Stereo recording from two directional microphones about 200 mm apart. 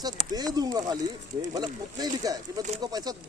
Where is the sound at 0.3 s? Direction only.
20° right (ahead or behind).